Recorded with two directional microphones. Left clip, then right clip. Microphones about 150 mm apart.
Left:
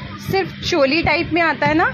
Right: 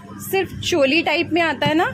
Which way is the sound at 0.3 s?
20° right (ahead or behind).